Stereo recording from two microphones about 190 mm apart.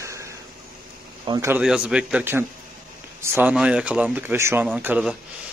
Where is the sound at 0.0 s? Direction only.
15° right (ahead or behind).